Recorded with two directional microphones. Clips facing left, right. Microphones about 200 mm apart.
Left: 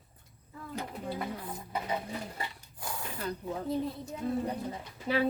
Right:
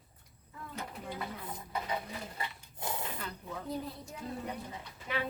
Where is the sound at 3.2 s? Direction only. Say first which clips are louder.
Left 7 dB; 40° left (ahead or behind).